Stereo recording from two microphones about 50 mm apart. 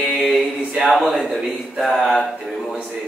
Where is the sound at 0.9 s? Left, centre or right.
Centre.